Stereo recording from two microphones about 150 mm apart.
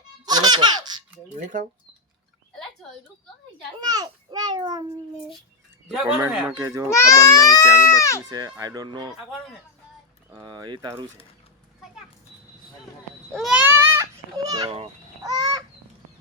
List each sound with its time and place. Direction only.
0.3 s laughter: 30° right (ahead or behind)
1.4 s speech: 55° right (ahead or behind)
3.8 s a child's voice: 25° right (ahead or behind)
5.9 s a child's voice: 5° right (ahead or behind)
6.9 s a child's voice: 20° left (ahead or behind)
8.3 s a child's voice: 25° right (ahead or behind)
10.2 s a child's voice: 25° right (ahead or behind)
13.3 s speech: centre (ahead or behind)
13.6 s children playing: 15° right (ahead or behind)
15.2 s goose: 25° right (ahead or behind)